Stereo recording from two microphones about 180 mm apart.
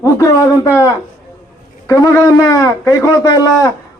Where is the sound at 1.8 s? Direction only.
20° left (ahead or behind).